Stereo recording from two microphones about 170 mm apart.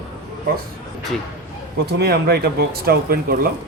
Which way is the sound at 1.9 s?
70° right (ahead or behind).